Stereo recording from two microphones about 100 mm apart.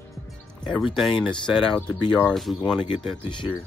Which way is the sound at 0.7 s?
5° right (ahead or behind).